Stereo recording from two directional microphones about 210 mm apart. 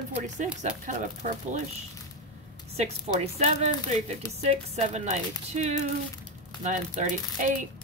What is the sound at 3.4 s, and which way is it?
A woman's voice, 30° right (ahead or behind).